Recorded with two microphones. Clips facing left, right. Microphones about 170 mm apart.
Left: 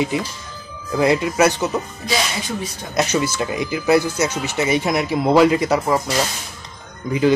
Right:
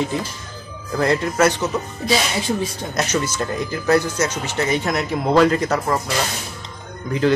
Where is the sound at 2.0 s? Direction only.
25° right (ahead or behind).